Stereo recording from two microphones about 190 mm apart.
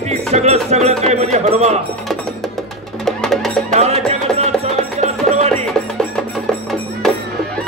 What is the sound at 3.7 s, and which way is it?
Music, 35° right (ahead or behind).